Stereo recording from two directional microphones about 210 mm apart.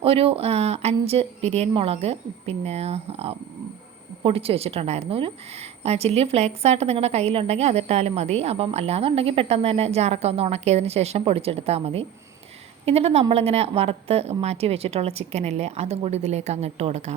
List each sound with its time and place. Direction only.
0.0 s a woman's voice: 25° right (ahead or behind)